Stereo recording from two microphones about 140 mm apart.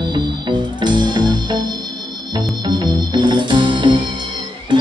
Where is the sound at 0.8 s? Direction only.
30° right (ahead or behind).